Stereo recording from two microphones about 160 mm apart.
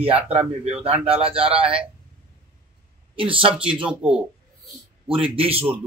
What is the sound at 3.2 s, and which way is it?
Speech, 35° right (ahead or behind).